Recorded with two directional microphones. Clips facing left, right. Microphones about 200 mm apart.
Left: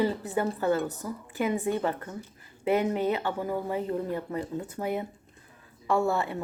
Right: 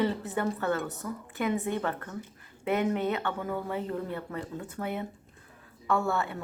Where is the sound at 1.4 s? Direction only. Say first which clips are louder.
Left 2 dB; 15° left (ahead or behind).